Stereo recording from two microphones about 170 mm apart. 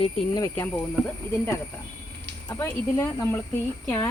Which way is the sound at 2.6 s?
15° left (ahead or behind).